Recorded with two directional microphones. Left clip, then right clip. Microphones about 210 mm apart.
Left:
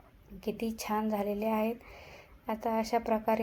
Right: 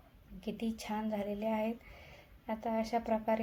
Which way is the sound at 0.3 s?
15° left (ahead or behind).